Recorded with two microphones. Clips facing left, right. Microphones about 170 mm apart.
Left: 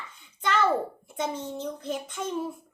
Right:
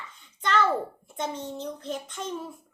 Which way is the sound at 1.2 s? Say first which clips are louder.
Left 1 dB; 5° left (ahead or behind).